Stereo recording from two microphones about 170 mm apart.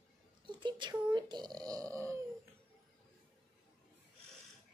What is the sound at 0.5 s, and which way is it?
Speech, 25° right (ahead or behind).